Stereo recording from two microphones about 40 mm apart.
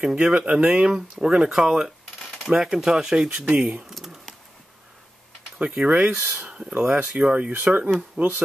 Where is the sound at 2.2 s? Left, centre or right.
Centre.